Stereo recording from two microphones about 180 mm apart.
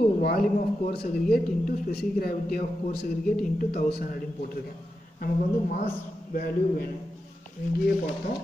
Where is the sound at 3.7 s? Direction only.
55° left (ahead or behind).